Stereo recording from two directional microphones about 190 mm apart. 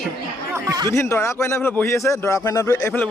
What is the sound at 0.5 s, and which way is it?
Speech, 20° right (ahead or behind).